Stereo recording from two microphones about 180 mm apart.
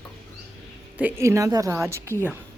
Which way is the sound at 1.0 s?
15° right (ahead or behind).